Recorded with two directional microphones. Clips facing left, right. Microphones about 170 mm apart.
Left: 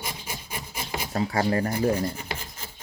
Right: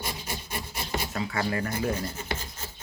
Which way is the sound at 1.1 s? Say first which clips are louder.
Left 7 dB; 35° left (ahead or behind).